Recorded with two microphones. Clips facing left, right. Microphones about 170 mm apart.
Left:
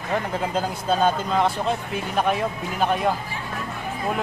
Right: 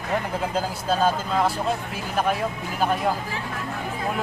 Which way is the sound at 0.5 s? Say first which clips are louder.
Left 2 dB; 5° right (ahead or behind).